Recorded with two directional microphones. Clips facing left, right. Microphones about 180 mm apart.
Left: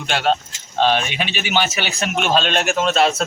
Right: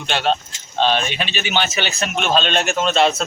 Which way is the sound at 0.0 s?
10° left (ahead or behind).